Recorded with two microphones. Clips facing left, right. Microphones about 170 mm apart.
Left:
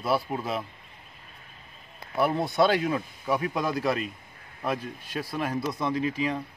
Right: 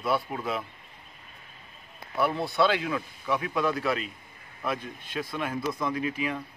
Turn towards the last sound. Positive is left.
turn(degrees=30)  # may be behind; listen again after turning